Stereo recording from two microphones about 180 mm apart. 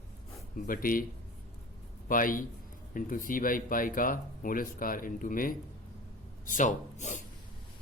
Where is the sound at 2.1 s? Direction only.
50° left (ahead or behind).